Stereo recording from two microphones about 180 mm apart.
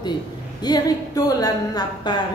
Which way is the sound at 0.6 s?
20° left (ahead or behind).